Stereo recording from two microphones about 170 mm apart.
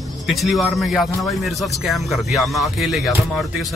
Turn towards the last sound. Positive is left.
turn(degrees=0)  # may be behind; listen again after turning